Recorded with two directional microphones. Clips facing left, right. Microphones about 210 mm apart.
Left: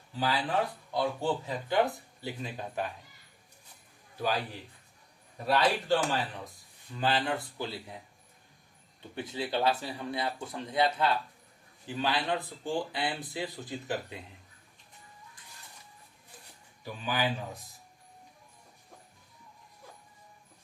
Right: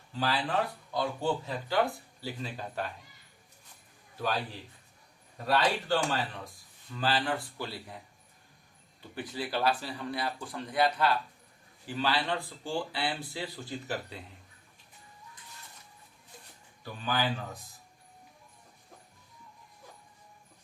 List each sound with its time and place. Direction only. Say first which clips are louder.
0.2 s speech: even; 10° left (ahead or behind)
5.5 s speech: left 1 dB; 15° left (ahead or behind)
9.1 s speech: left 2 dB; 25° left (ahead or behind)
16.8 s speech: even; 15° left (ahead or behind)